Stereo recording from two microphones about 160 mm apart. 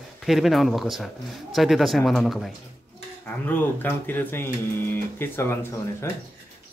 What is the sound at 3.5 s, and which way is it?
Speech, 10° left (ahead or behind).